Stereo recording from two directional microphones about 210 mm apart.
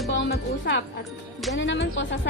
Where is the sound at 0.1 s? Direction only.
55° left (ahead or behind).